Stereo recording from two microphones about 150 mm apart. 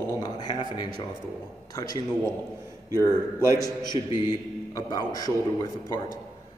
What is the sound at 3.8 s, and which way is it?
A man's voice, 30° left (ahead or behind).